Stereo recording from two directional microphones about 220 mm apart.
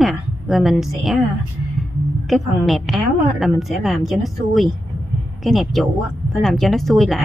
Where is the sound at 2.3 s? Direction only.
Centre (ahead or behind).